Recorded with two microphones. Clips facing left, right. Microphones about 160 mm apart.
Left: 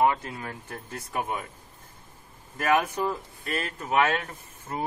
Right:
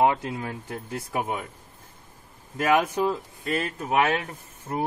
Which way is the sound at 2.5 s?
20° right (ahead or behind).